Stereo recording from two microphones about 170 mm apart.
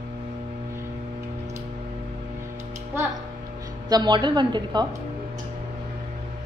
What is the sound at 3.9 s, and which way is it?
Speech, 25° right (ahead or behind).